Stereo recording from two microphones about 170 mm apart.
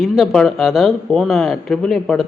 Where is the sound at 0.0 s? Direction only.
Centre (ahead or behind).